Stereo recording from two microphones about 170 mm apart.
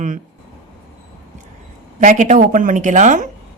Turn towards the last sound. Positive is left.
turn(degrees=-45)  # may be behind; listen again after turning